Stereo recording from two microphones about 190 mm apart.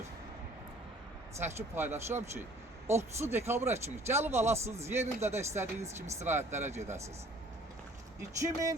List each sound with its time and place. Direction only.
1.4 s speech: 15° right (ahead or behind)
8.2 s speech: 15° right (ahead or behind)